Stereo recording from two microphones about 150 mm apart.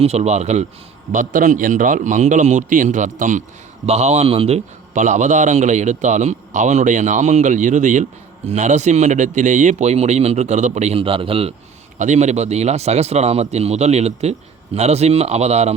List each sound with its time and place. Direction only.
0.0 s a man's voice: 45° right (ahead or behind)
1.1 s a man's voice: 60° right (ahead or behind)
3.8 s a man's voice: 45° right (ahead or behind)
11.9 s a man's voice: 55° right (ahead or behind)